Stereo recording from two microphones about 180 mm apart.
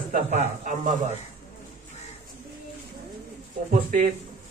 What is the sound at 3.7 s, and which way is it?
Speech, 45° right (ahead or behind).